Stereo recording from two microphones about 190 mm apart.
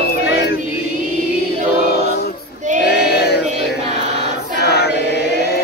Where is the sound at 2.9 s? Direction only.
55° left (ahead or behind).